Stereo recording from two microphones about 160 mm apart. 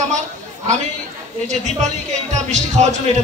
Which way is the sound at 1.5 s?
45° right (ahead or behind).